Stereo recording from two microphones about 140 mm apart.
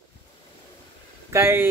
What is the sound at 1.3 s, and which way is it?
Speech, 15° right (ahead or behind).